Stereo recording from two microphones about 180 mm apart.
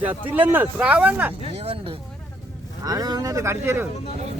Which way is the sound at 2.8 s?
20° right (ahead or behind).